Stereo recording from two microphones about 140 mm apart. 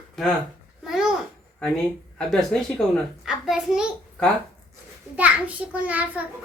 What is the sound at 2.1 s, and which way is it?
A child's voice, 5° left (ahead or behind).